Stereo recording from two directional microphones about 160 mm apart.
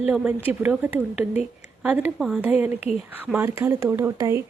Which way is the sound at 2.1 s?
Centre (ahead or behind).